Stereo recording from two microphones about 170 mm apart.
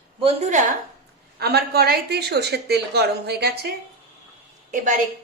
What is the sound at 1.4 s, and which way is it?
A woman's voice, 65° right (ahead or behind).